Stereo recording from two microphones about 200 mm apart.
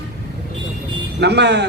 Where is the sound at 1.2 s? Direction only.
55° right (ahead or behind).